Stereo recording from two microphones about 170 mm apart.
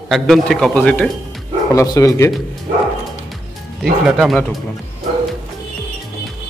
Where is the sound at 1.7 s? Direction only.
20° left (ahead or behind).